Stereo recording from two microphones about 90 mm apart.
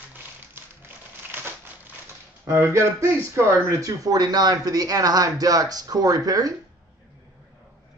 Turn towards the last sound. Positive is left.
turn(degrees=-45)  # may be behind; listen again after turning